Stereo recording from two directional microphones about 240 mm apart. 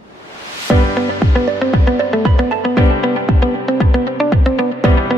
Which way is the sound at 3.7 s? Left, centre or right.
Centre.